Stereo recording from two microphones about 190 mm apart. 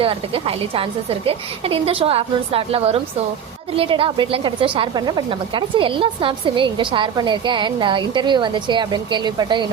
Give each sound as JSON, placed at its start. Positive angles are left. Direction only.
{"t": 0.0, "sound": "a woman's voice", "side_deg": -30}